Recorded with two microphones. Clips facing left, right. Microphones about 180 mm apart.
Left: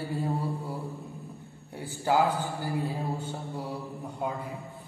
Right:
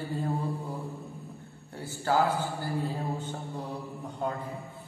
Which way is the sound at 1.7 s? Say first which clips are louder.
Left 1 dB; 15° left (ahead or behind).